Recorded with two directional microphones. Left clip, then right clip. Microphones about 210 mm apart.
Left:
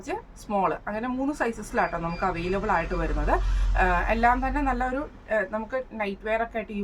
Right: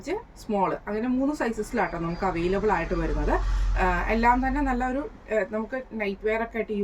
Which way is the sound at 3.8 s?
15° left (ahead or behind).